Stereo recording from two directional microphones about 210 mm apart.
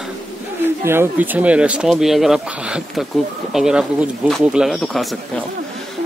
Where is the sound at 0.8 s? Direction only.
10° right (ahead or behind).